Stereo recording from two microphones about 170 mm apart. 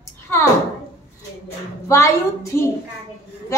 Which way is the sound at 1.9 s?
15° left (ahead or behind).